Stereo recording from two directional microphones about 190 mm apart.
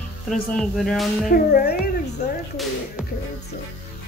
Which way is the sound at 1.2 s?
50° left (ahead or behind).